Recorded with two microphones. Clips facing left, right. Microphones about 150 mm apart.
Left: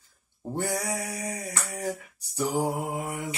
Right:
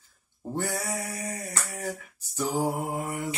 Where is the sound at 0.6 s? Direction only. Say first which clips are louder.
Left 2 dB; 15° left (ahead or behind).